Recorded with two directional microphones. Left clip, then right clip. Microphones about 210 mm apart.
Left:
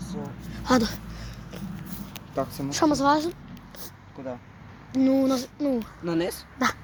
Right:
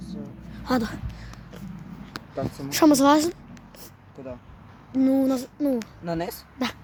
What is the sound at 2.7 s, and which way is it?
Speech, 50° right (ahead or behind).